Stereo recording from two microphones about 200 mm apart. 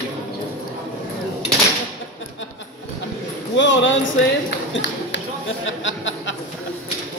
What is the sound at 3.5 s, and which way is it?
Speech, 65° left (ahead or behind).